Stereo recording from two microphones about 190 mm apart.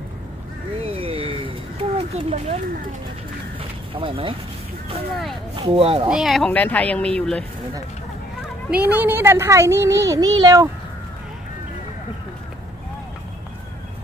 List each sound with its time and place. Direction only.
0.7 s a sound: 30° right (ahead or behind)
3.9 s speech: 30° right (ahead or behind)
5.6 s speech: 30° right (ahead or behind)
6.0 s speech: centre (ahead or behind)
8.6 s a child's voice: 10° right (ahead or behind)